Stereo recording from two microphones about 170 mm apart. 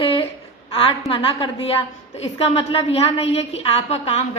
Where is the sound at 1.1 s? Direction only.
30° left (ahead or behind).